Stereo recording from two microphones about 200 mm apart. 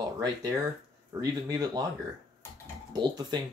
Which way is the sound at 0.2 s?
20° right (ahead or behind).